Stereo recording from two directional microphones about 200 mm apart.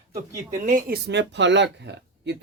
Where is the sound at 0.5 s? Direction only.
40° right (ahead or behind); by 1.7 s 60° right (ahead or behind).